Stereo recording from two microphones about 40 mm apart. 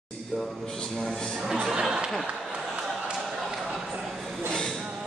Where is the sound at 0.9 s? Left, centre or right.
Centre.